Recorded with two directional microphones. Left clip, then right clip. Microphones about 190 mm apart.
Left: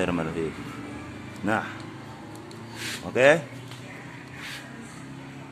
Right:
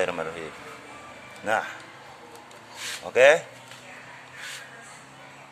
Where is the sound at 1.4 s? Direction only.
15° right (ahead or behind).